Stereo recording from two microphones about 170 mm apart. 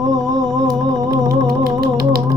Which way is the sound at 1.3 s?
65° right (ahead or behind).